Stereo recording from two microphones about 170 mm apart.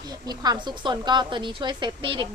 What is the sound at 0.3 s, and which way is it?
A woman's voice, 25° right (ahead or behind).